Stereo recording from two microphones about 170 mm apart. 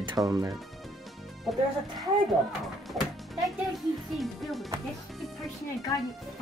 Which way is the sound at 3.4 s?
Centre (ahead or behind).